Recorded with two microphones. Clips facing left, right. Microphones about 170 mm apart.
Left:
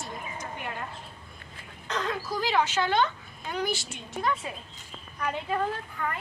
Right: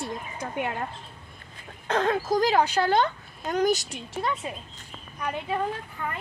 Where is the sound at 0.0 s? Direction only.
60° right (ahead or behind).